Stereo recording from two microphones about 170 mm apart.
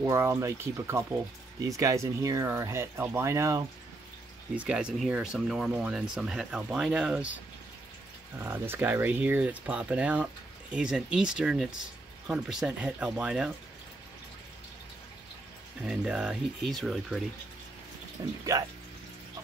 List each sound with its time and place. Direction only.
0.0 s speech: 15° right (ahead or behind)
4.6 s speech: 5° right (ahead or behind)
8.4 s speech: 15° right (ahead or behind)
15.8 s speech: 5° right (ahead or behind)
18.4 s speech: 20° right (ahead or behind)